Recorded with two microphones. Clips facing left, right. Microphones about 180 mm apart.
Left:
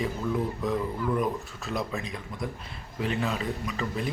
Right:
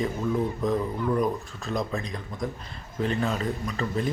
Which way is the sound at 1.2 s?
5° left (ahead or behind).